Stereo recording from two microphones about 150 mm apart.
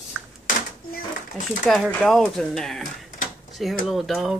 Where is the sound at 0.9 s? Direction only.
60° left (ahead or behind).